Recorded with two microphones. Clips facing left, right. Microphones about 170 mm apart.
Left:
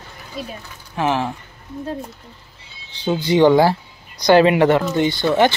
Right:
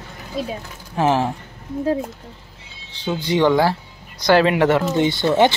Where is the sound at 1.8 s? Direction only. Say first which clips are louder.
Right 7 dB; 85° right.